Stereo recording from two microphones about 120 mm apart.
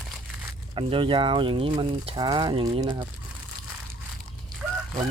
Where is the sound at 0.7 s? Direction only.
45° right (ahead or behind).